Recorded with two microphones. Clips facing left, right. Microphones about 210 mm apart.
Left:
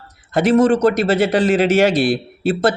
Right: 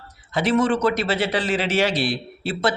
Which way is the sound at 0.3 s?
45° left (ahead or behind).